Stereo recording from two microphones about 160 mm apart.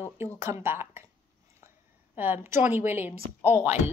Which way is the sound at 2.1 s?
10° right (ahead or behind).